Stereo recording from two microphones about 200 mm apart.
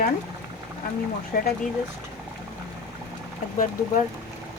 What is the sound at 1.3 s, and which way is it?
Speech, 45° left (ahead or behind).